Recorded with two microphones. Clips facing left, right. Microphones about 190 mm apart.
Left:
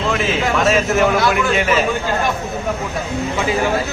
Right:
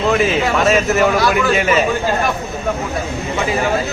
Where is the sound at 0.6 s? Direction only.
Centre (ahead or behind).